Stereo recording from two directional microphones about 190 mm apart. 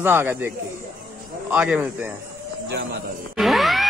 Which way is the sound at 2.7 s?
60° right (ahead or behind).